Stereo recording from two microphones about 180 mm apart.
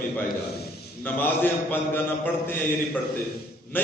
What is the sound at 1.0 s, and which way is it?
A man's voice, 10° left (ahead or behind).